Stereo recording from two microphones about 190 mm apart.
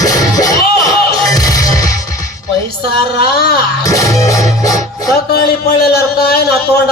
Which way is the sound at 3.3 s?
55° left (ahead or behind).